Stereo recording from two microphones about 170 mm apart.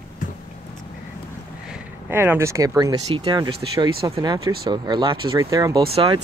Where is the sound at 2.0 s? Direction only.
15° right (ahead or behind).